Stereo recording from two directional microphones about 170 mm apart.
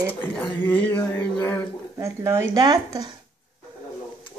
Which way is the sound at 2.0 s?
15° right (ahead or behind).